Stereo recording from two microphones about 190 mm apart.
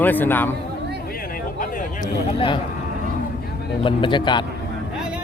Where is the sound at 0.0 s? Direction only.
10° left (ahead or behind).